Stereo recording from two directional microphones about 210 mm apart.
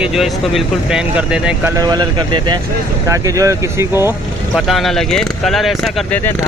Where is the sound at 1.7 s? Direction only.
20° right (ahead or behind).